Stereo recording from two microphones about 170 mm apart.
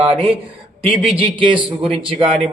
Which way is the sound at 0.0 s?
35° right (ahead or behind).